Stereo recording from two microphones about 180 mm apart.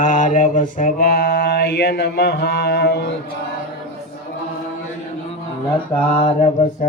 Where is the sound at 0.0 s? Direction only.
45° left (ahead or behind); by 3.1 s 65° left (ahead or behind).